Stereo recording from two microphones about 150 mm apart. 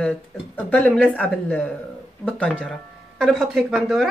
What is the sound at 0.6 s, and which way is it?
Speech, 10° left (ahead or behind).